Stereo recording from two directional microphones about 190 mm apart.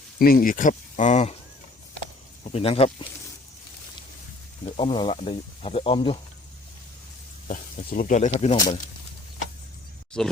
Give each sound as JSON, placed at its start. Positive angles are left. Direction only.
{"t": 0.2, "sound": "speech", "side_deg": 50}
{"t": 2.4, "sound": "speech", "side_deg": 30}
{"t": 4.6, "sound": "speech", "side_deg": 25}
{"t": 7.4, "sound": "speech", "side_deg": 45}
{"t": 10.2, "sound": "speech", "side_deg": 5}